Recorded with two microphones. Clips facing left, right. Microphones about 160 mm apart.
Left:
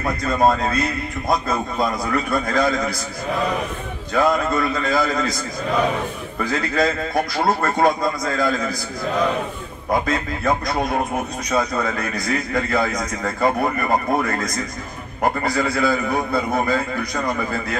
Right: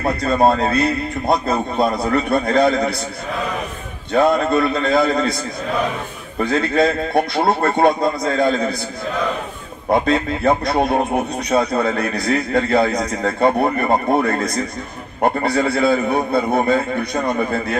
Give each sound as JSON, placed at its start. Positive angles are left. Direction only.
{"t": 0.0, "sound": "speech", "side_deg": -30}
{"t": 4.1, "sound": "speech", "side_deg": -25}
{"t": 6.4, "sound": "speech", "side_deg": -25}
{"t": 9.8, "sound": "speech", "side_deg": -30}